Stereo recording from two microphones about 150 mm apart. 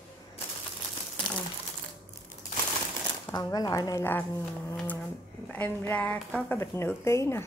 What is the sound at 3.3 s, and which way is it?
Speech, 25° left (ahead or behind).